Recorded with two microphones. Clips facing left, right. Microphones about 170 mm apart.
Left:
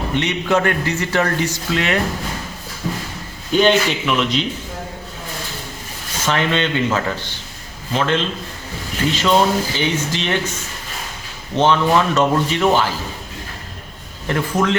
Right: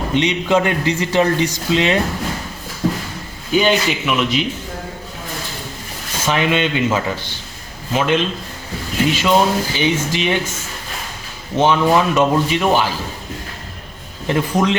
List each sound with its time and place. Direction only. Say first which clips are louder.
0.1 s a man's voice: right 3 dB; 20° right (ahead or behind)
3.5 s speech: left 1 dB; 5° right (ahead or behind)
6.2 s speech: right 1 dB; 15° right (ahead or behind)
11.5 s speech: right 1 dB; 10° right (ahead or behind)
14.3 s speech: right 2 dB; 20° right (ahead or behind)